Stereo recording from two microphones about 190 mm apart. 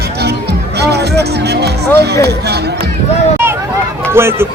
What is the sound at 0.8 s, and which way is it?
Music, 60° right (ahead or behind).